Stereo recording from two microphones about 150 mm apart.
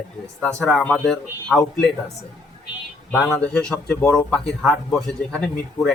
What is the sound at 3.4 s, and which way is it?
Speech, 5° left (ahead or behind).